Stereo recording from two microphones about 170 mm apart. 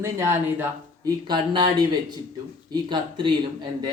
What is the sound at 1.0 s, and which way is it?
Speech, 30° right (ahead or behind).